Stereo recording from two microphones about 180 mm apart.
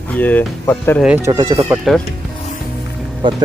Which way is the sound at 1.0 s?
10° right (ahead or behind).